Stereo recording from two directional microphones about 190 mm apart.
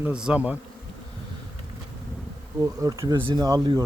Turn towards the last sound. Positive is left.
turn(degrees=-20)  # may be behind; listen again after turning